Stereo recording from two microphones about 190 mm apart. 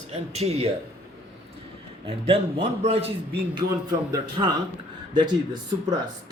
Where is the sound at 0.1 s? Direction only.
35° right (ahead or behind).